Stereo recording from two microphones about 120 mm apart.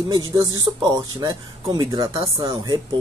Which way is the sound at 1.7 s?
40° right (ahead or behind).